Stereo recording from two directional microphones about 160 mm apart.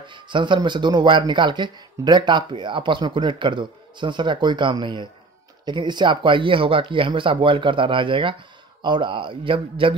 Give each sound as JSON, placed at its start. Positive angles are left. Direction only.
{"t": 0.0, "sound": "speech", "side_deg": -30}